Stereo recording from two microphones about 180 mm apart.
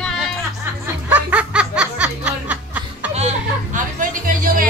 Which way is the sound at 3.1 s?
40° right (ahead or behind).